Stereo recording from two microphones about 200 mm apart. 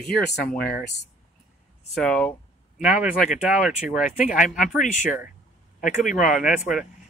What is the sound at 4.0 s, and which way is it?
Speech, 40° left (ahead or behind).